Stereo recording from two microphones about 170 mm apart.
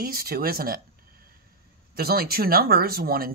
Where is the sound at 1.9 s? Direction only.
65° right (ahead or behind).